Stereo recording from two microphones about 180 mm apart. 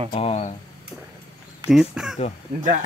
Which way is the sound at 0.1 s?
35° left (ahead or behind).